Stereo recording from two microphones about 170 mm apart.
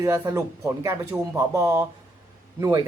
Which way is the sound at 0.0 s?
20° right (ahead or behind).